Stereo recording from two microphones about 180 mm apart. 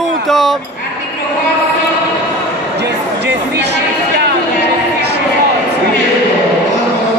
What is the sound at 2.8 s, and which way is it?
Speech, 70° right (ahead or behind).